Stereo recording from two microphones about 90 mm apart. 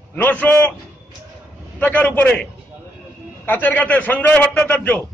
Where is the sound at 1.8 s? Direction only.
15° left (ahead or behind).